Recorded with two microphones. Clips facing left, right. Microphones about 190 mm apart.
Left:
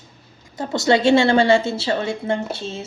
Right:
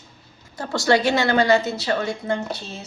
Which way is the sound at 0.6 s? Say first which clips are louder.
Left 2 dB; 20° left (ahead or behind).